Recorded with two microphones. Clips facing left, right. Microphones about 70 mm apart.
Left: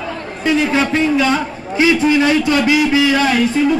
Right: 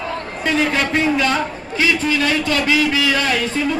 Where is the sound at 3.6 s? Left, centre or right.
Centre.